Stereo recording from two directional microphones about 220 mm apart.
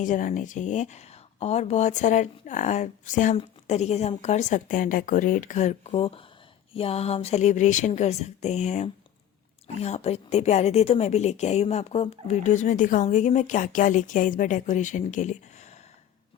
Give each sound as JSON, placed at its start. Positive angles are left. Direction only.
{"t": 0.0, "sound": "speech", "side_deg": 35}